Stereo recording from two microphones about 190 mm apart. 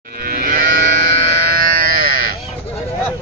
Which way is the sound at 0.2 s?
50° right (ahead or behind).